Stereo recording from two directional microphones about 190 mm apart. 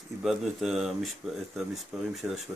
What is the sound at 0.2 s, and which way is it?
Speech, centre (ahead or behind).